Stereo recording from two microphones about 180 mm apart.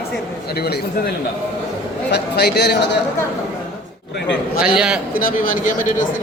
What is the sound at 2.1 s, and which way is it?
Speech, 65° left (ahead or behind).